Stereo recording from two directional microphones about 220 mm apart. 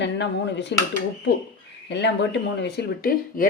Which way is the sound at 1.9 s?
55° left (ahead or behind).